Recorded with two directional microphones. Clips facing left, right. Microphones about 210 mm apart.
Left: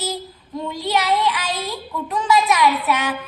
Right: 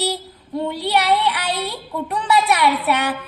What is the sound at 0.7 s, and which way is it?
Speech, 60° right (ahead or behind).